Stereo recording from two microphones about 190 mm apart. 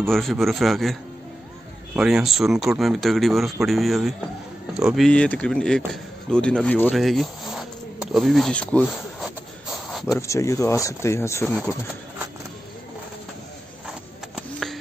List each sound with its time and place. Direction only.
0.1 s speech: centre (ahead or behind)
2.0 s speech: 5° right (ahead or behind)
5.9 s a sound: 5° left (ahead or behind)
10.0 s speech: 15° left (ahead or behind)
11.4 s speech: centre (ahead or behind)
14.3 s music: centre (ahead or behind)